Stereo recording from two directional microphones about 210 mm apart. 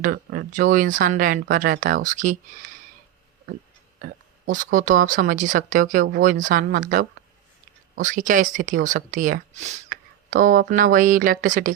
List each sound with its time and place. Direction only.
0.0 s speech: 45° right (ahead or behind)
4.0 s speech: 40° right (ahead or behind)